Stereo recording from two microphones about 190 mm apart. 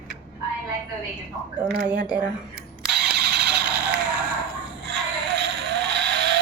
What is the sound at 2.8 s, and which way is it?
Engine starting, 60° right (ahead or behind).